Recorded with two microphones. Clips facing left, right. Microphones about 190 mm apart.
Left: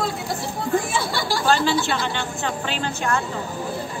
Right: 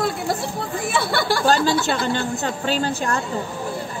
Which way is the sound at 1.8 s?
40° right (ahead or behind).